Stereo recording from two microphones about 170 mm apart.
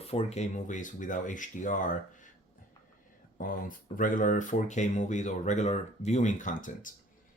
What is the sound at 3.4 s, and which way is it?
Speech, 55° left (ahead or behind).